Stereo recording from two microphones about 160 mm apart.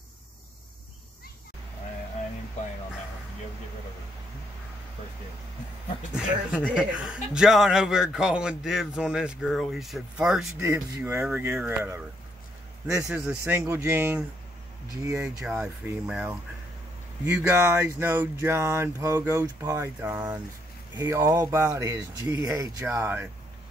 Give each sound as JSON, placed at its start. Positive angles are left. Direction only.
{"t": 6.1, "sound": "a man's voice", "side_deg": -5}
{"t": 10.6, "sound": "speech", "side_deg": -20}
{"t": 11.1, "sound": "a man's voice", "side_deg": -5}
{"t": 13.1, "sound": "a man's voice", "side_deg": -5}
{"t": 13.5, "sound": "speech", "side_deg": -15}
{"t": 15.2, "sound": "a man's voice", "side_deg": -5}
{"t": 17.4, "sound": "speech", "side_deg": -15}
{"t": 21.0, "sound": "speech", "side_deg": -20}